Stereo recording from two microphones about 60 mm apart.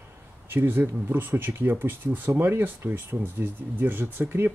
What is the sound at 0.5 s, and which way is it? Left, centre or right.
Speech, right.